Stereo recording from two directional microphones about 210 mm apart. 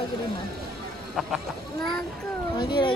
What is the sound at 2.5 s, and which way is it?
Speech, 20° left (ahead or behind).